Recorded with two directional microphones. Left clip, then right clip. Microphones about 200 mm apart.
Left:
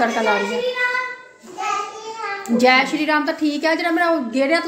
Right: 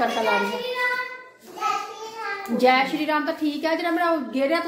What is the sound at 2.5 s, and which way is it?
A woman's voice, 15° left (ahead or behind).